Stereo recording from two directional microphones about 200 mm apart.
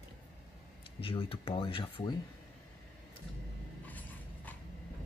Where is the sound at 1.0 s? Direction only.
25° left (ahead or behind).